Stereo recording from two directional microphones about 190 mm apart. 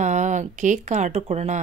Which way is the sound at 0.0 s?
40° right (ahead or behind).